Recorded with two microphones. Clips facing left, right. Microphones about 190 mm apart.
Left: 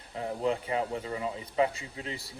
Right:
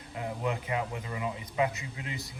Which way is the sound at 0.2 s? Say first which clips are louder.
Left 3 dB; 30° left (ahead or behind).